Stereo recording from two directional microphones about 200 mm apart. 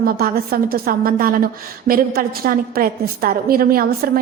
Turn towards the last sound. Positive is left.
turn(degrees=-45)  # may be behind; listen again after turning